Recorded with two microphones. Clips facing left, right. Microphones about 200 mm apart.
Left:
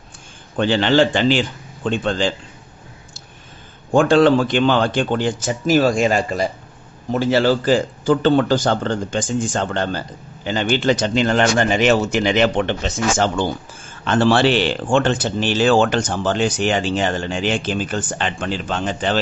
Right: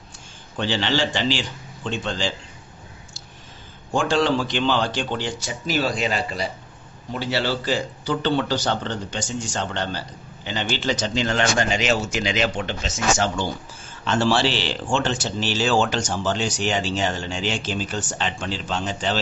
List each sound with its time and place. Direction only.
0.6 s speech: 50° left (ahead or behind)
3.9 s speech: 55° left (ahead or behind)